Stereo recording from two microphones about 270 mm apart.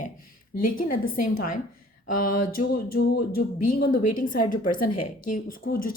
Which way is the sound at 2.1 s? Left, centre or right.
Left.